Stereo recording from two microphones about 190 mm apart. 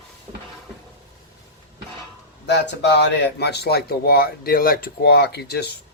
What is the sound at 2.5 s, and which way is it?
A man's voice, 65° left (ahead or behind).